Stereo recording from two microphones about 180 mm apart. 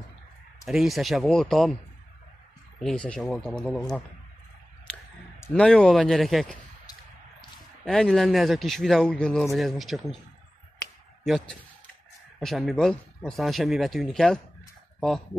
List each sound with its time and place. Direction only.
0.7 s a man's voice: centre (ahead or behind)
2.8 s a man's voice: 5° left (ahead or behind)
5.4 s a man's voice: 5° left (ahead or behind)
7.8 s a man's voice: 5° left (ahead or behind)
11.2 s a man's voice: centre (ahead or behind)